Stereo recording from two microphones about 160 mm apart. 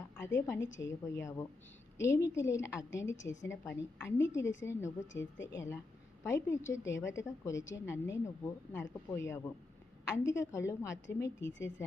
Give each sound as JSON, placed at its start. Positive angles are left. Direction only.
{"t": 0.2, "sound": "a woman's voice", "side_deg": 15}